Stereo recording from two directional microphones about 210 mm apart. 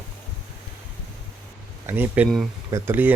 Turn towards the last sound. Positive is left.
turn(degrees=-10)  # may be behind; listen again after turning